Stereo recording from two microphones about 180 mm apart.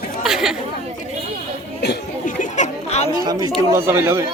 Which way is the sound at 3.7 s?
15° right (ahead or behind).